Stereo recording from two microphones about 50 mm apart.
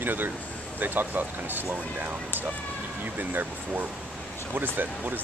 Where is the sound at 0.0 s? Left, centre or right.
Right.